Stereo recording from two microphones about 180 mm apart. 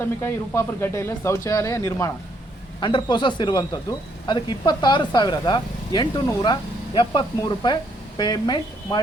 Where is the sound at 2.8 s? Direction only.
25° left (ahead or behind).